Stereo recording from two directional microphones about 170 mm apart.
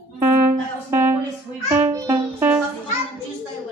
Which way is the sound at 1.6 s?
15° right (ahead or behind).